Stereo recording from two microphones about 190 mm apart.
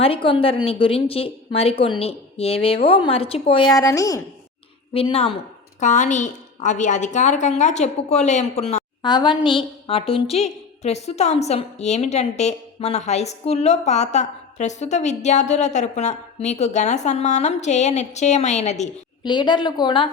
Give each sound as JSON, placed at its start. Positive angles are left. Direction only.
{"t": 0.0, "sound": "a woman's voice", "side_deg": 30}
{"t": 3.8, "sound": "a woman's voice", "side_deg": 20}
{"t": 4.9, "sound": "a woman's voice", "side_deg": 30}
{"t": 9.0, "sound": "a woman's voice", "side_deg": 25}
{"t": 19.2, "sound": "a woman's voice", "side_deg": 25}